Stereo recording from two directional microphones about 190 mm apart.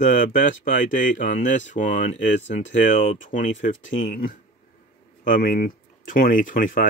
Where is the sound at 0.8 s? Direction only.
40° left (ahead or behind).